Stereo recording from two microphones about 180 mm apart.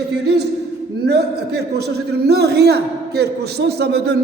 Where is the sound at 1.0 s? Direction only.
65° right (ahead or behind).